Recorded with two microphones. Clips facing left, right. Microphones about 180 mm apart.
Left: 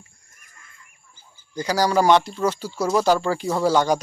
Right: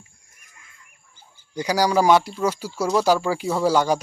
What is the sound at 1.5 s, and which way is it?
Speech, 10° right (ahead or behind).